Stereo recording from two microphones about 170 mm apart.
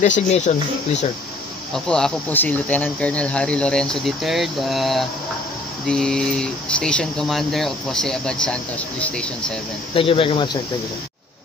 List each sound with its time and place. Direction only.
0.3 s speech: 40° left (ahead or behind)
1.7 s speech: 5° left (ahead or behind)
9.9 s speech: 30° left (ahead or behind)